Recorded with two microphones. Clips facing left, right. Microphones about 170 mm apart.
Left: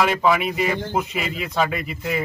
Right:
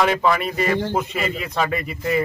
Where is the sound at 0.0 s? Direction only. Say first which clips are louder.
Even; centre (ahead or behind).